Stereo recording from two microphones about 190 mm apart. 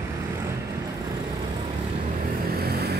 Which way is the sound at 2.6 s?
55° right (ahead or behind).